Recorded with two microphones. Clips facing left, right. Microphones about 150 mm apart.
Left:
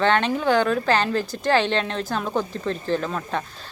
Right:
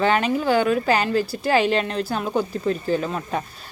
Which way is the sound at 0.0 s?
5° right (ahead or behind).